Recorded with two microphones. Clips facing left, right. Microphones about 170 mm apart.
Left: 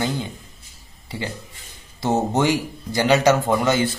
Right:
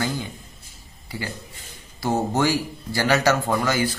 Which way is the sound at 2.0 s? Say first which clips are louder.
Left 2 dB; 20° left (ahead or behind).